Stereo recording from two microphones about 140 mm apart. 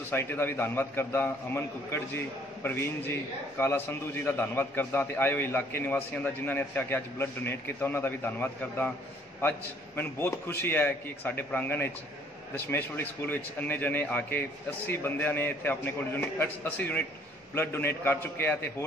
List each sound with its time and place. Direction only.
0.1 s a man's voice: 15° left (ahead or behind)